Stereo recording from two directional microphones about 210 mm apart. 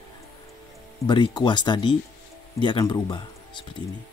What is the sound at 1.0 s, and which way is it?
Speech, 20° left (ahead or behind).